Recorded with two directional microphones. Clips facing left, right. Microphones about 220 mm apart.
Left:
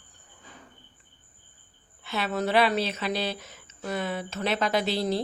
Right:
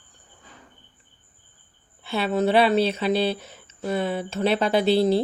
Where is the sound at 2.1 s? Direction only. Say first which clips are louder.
Right 6 dB; 30° right (ahead or behind).